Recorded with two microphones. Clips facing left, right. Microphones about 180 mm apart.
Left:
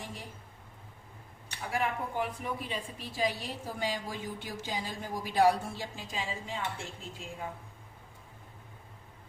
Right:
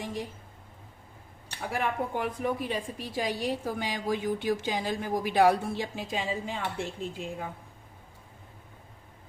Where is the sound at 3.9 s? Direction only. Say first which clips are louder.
Right 8 dB; 75° right (ahead or behind).